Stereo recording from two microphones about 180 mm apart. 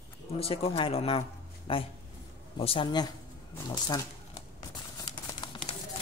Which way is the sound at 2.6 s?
30° left (ahead or behind).